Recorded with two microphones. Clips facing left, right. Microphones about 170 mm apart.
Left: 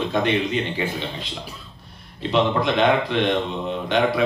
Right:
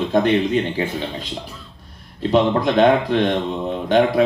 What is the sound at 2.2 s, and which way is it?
Speech, 45° right (ahead or behind).